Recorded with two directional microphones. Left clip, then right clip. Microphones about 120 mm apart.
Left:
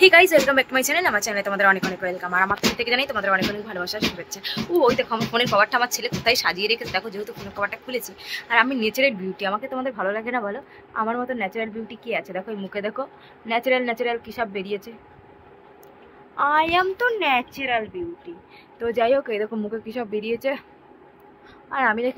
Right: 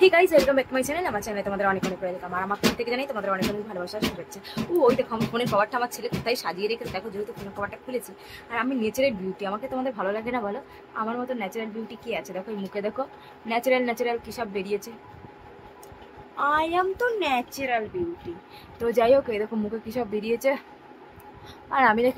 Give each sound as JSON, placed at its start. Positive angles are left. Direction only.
{"t": 0.0, "sound": "speech", "side_deg": -10}
{"t": 2.0, "sound": "speech", "side_deg": 10}
{"t": 2.5, "sound": "speech", "side_deg": -5}
{"t": 3.8, "sound": "a woman's voice", "side_deg": -10}
{"t": 11.0, "sound": "a woman's voice", "side_deg": -5}
{"t": 16.3, "sound": "speech", "side_deg": -20}
{"t": 18.8, "sound": "speech", "side_deg": -30}
{"t": 21.6, "sound": "a woman's voice", "side_deg": -35}